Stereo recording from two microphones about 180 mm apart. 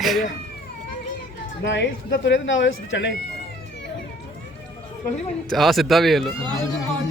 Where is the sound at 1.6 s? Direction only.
85° left.